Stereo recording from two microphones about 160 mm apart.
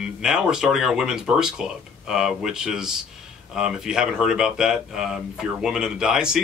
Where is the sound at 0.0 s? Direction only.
5° right (ahead or behind).